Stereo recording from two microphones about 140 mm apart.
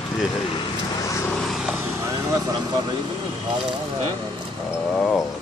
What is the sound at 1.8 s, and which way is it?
Vehicle, 20° right (ahead or behind).